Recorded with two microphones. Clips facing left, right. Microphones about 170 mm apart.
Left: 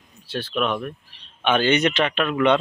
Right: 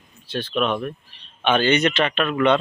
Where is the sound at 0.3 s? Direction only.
10° left (ahead or behind).